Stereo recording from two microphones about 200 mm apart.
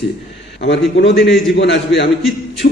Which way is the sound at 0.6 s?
60° left (ahead or behind).